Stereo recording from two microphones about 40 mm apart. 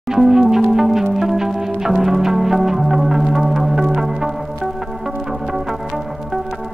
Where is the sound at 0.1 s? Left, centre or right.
Centre.